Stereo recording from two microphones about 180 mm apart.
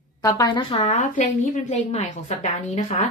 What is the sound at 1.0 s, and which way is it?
A woman's voice, 45° left (ahead or behind).